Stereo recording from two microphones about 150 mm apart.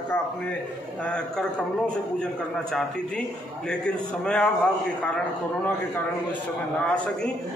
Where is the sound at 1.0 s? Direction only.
5° left (ahead or behind).